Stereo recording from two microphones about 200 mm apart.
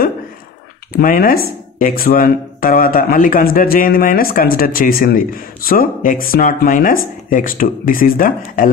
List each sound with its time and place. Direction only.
0.9 s speech: 45° left (ahead or behind)